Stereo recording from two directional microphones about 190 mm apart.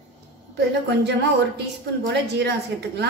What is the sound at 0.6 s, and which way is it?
A woman's voice, 60° right (ahead or behind).